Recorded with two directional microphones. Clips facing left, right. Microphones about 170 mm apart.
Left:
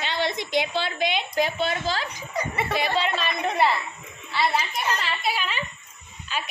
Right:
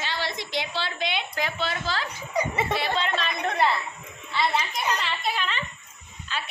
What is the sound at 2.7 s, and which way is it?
Speech, 10° left (ahead or behind).